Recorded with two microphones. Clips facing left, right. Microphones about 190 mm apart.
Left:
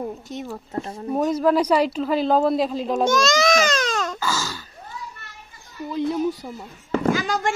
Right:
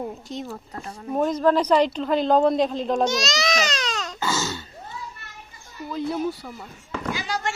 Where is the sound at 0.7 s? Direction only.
30° left (ahead or behind).